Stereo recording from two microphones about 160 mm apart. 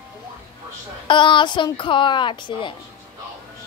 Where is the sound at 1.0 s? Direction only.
30° left (ahead or behind).